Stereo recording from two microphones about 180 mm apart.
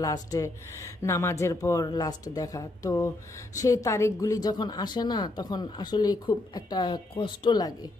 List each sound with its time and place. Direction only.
0.0 s speech: 20° left (ahead or behind)